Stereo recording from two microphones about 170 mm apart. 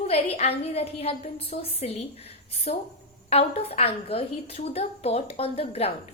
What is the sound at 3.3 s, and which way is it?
A woman's voice, 35° left (ahead or behind).